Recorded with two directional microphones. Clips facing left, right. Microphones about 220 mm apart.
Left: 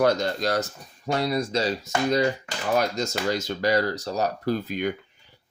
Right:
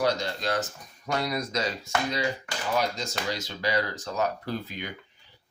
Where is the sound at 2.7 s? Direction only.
45° left (ahead or behind).